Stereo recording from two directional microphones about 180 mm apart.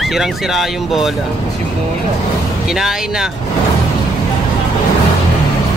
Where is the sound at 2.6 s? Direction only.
5° right (ahead or behind).